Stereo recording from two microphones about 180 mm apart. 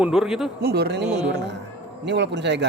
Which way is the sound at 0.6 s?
65° right (ahead or behind).